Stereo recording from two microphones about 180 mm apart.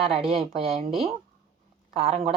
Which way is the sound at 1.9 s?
35° right (ahead or behind).